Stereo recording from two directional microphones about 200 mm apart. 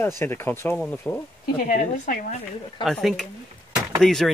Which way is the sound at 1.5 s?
35° left (ahead or behind).